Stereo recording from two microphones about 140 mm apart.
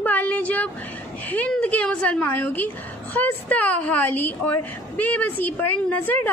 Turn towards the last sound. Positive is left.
turn(degrees=10)  # may be behind; listen again after turning